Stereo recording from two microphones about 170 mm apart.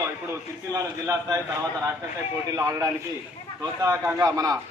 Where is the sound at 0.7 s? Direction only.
20° right (ahead or behind).